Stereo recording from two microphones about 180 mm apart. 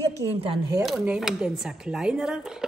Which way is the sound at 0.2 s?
20° right (ahead or behind).